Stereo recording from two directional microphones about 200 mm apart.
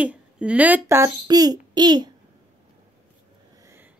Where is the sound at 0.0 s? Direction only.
5° right (ahead or behind).